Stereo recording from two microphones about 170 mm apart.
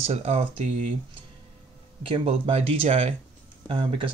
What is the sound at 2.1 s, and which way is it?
Speech, 35° right (ahead or behind).